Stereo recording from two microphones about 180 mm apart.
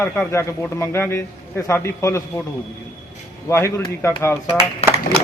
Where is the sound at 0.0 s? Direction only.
15° left (ahead or behind).